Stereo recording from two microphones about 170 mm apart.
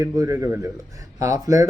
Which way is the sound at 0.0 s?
20° right (ahead or behind).